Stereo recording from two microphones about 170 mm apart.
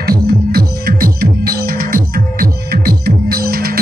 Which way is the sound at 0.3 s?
65° right (ahead or behind).